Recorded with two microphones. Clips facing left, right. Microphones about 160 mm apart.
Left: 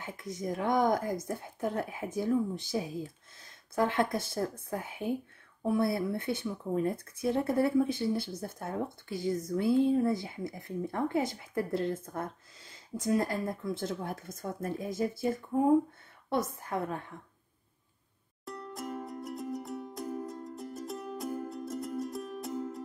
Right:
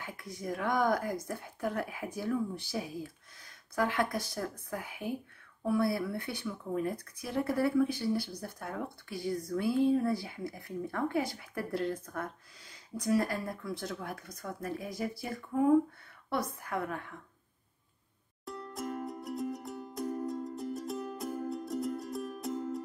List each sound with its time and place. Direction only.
0.0 s speech: 20° left (ahead or behind)
18.4 s music: centre (ahead or behind)